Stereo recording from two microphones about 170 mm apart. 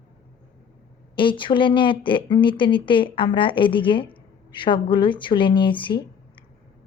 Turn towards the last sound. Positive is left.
turn(degrees=30)  # may be behind; listen again after turning